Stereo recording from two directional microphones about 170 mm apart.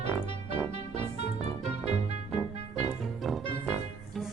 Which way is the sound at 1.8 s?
40° right (ahead or behind).